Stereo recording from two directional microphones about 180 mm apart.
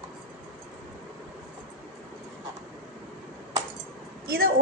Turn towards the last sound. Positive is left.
turn(degrees=-60)  # may be behind; listen again after turning